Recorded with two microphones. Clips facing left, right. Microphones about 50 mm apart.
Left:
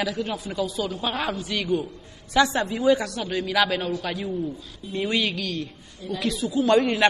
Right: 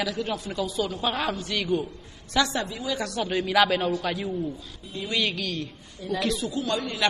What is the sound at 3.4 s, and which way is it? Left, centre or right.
Speech, centre.